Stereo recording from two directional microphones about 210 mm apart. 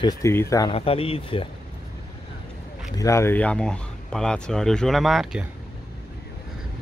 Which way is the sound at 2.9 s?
15° left (ahead or behind).